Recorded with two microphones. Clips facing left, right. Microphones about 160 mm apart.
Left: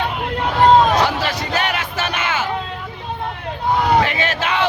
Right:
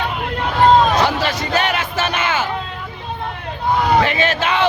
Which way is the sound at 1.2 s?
25° right (ahead or behind).